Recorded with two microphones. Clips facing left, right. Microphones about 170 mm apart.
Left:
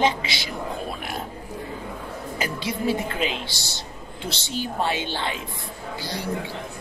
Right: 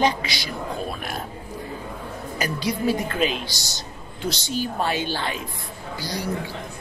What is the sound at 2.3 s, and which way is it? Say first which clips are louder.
A man's voice: right 3 dB; 25° left (ahead or behind).